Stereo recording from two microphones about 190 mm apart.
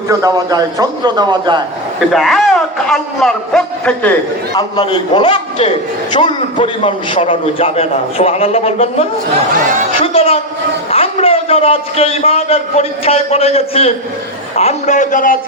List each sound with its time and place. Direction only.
0.1 s a man's voice: 20° right (ahead or behind)
2.1 s a man's voice: centre (ahead or behind)
4.5 s a man's voice: 25° left (ahead or behind); by 15.4 s 45° left (ahead or behind)